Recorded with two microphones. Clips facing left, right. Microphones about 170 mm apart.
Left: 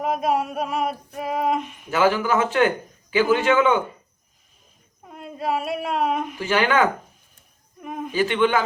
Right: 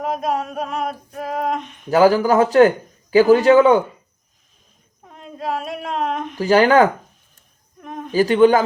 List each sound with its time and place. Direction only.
0.0 s male singing: 5° left (ahead or behind)
1.9 s speech: 40° right (ahead or behind)
5.0 s a woman's voice: 5° left (ahead or behind)
6.3 s speech: 40° right (ahead or behind)
7.8 s a sound: 5° left (ahead or behind)
8.1 s speech: 40° right (ahead or behind)